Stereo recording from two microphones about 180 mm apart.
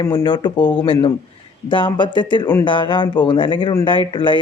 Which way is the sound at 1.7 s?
25° left (ahead or behind).